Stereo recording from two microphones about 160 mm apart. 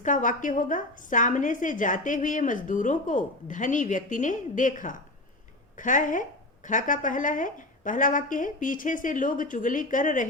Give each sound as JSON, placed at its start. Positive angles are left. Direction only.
{"t": 0.0, "sound": "a woman's voice", "side_deg": 55}